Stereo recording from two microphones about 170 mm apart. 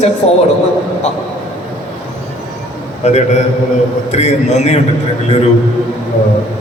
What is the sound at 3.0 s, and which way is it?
A man's voice, 40° left (ahead or behind).